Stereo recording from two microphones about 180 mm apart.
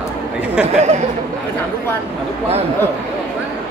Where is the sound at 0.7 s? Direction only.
40° right (ahead or behind).